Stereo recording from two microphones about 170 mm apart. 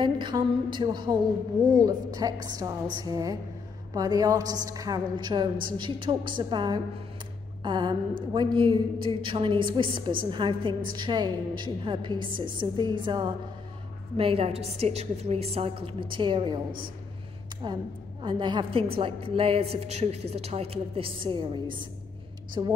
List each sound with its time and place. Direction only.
0.0 s a woman's voice: 25° right (ahead or behind)
18.2 s a woman's voice: 25° right (ahead or behind)